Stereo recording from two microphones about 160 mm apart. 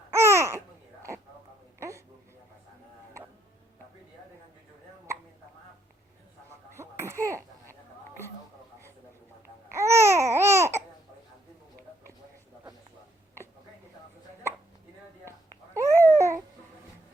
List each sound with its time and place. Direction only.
0.1 s babbling: 15° right (ahead or behind)
6.7 s cough: 15° right (ahead or behind)
9.7 s babbling: 15° right (ahead or behind)
15.7 s babbling: 15° right (ahead or behind)